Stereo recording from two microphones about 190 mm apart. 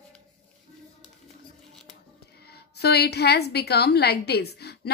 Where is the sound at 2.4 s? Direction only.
55° left (ahead or behind).